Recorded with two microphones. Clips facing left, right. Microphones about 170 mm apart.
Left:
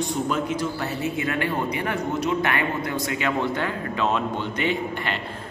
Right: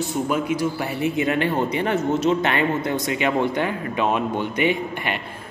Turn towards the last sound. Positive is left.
turn(degrees=-15)  # may be behind; listen again after turning